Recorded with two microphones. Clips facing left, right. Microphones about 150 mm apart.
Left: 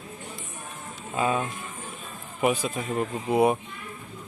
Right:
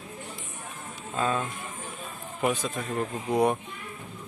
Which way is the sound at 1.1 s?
10° left (ahead or behind).